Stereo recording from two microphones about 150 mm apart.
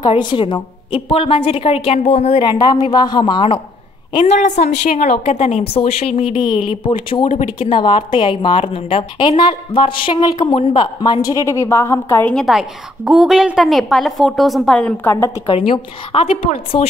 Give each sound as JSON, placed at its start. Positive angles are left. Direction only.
{"t": 0.0, "sound": "a woman's voice", "side_deg": 30}
{"t": 2.4, "sound": "a woman's voice", "side_deg": 30}
{"t": 4.3, "sound": "a woman's voice", "side_deg": 50}
{"t": 7.2, "sound": "a woman's voice", "side_deg": 45}
{"t": 12.3, "sound": "a woman's voice", "side_deg": 0}
{"t": 15.4, "sound": "a woman's voice", "side_deg": 35}